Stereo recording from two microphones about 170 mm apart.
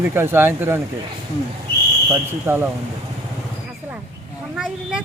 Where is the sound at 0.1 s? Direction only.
15° right (ahead or behind).